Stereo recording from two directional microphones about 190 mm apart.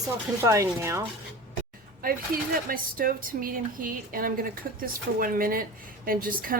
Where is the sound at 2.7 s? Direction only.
50° right (ahead or behind).